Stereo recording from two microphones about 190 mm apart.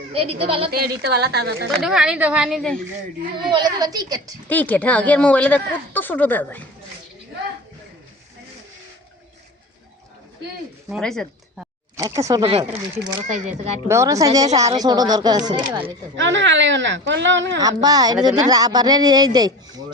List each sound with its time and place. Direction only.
0.1 s speech: 30° right (ahead or behind)
0.7 s a woman's voice: 55° right (ahead or behind)
1.8 s speech: 5° right (ahead or behind)
3.3 s speech: 25° right (ahead or behind)
4.4 s speech: 10° left (ahead or behind)
10.8 s speech: centre (ahead or behind)
11.9 s speech: 15° right (ahead or behind)
12.4 s speech: 30° right (ahead or behind)
13.8 s speech: 15° right (ahead or behind)
16.1 s speech: 70° right (ahead or behind)
17.6 s speech: 20° right (ahead or behind)